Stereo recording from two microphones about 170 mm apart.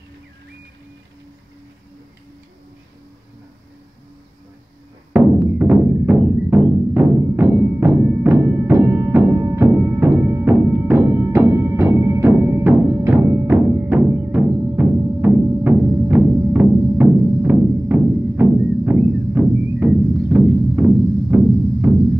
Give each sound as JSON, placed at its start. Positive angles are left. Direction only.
{"t": 5.1, "sound": "music", "side_deg": -10}